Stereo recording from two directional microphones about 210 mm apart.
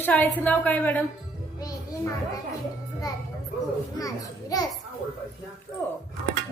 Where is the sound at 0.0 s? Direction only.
10° left (ahead or behind).